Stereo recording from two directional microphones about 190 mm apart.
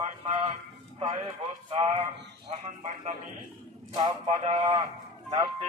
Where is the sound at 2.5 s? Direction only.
35° right (ahead or behind).